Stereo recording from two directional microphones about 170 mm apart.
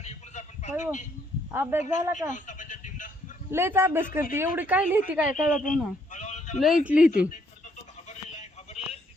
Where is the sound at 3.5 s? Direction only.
15° right (ahead or behind).